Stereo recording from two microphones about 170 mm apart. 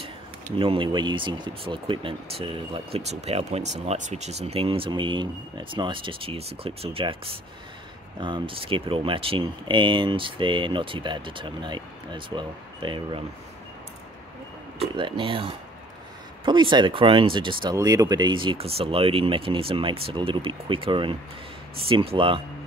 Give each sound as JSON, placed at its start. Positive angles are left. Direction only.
{"t": 0.6, "sound": "speech", "side_deg": -30}
{"t": 14.8, "sound": "speech", "side_deg": -30}